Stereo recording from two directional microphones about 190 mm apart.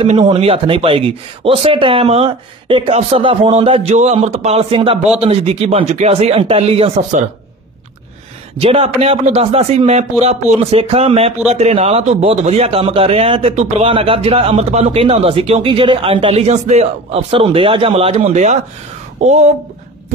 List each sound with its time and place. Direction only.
0.2 s speech: 30° right (ahead or behind)
8.5 s speech: 30° right (ahead or behind)